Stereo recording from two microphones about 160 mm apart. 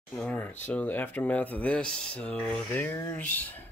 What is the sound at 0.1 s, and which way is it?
Speech, 5° left (ahead or behind).